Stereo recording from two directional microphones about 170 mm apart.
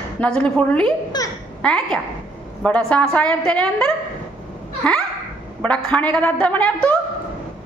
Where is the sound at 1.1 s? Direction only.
25° left (ahead or behind).